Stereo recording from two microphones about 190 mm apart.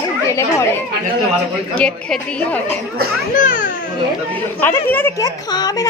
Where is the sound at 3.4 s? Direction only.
45° left (ahead or behind).